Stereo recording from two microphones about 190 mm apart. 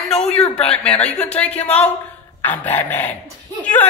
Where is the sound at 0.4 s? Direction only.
30° left (ahead or behind).